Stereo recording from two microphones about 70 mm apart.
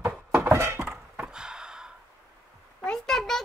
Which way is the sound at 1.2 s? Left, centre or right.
Centre.